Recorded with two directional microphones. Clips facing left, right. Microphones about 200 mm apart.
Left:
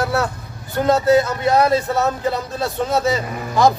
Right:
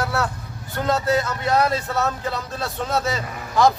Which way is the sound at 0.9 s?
15° left (ahead or behind).